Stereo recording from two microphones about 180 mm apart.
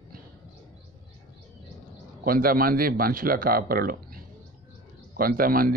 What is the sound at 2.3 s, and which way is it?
Speech, 55° right (ahead or behind).